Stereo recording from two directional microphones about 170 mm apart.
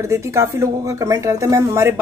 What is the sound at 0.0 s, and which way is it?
A woman's voice, 15° right (ahead or behind).